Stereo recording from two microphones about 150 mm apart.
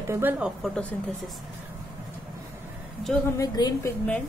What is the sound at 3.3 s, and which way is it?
Speech, 25° left (ahead or behind).